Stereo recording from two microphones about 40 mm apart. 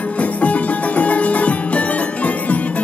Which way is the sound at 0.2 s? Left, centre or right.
Left.